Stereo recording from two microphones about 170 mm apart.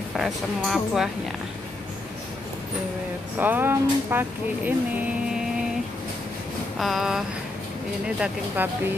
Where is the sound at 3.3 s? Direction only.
10° right (ahead or behind).